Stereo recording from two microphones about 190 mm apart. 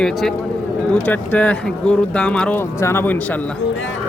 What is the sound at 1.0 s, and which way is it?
Speech, 10° left (ahead or behind).